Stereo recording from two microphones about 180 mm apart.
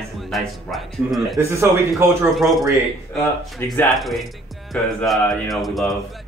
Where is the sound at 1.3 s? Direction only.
15° right (ahead or behind).